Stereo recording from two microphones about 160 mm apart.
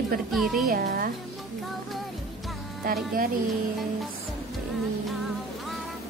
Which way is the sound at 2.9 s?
65° right (ahead or behind).